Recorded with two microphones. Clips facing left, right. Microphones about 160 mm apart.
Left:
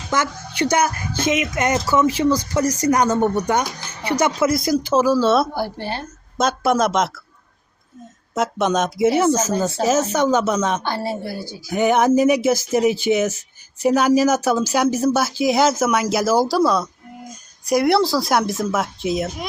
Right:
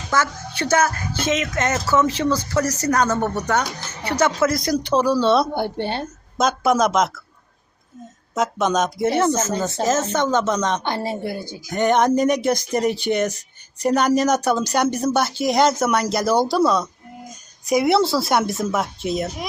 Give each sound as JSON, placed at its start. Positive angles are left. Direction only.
{"t": 0.1, "sound": "a woman's voice", "side_deg": 15}
{"t": 5.5, "sound": "a woman's voice", "side_deg": -20}
{"t": 6.3, "sound": "speech", "side_deg": 0}
{"t": 8.4, "sound": "a woman's voice", "side_deg": 0}
{"t": 10.8, "sound": "a woman's voice", "side_deg": -20}
{"t": 11.7, "sound": "speech", "side_deg": 5}